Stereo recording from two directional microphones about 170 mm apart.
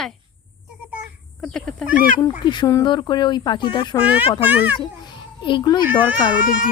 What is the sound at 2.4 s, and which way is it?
A woman's voice, 25° left (ahead or behind).